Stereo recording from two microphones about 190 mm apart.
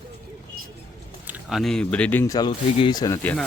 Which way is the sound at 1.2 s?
5° right (ahead or behind).